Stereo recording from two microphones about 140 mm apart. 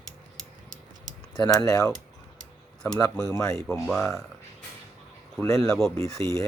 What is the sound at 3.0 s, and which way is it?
Speech, 25° left (ahead or behind).